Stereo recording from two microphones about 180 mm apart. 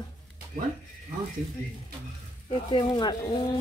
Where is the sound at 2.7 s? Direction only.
25° left (ahead or behind).